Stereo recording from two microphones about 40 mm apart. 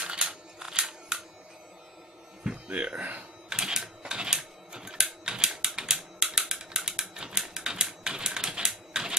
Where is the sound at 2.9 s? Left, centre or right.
Right.